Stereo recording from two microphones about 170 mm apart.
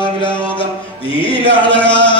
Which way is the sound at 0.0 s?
30° left (ahead or behind).